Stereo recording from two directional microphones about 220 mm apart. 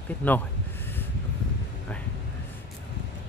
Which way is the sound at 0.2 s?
5° left (ahead or behind).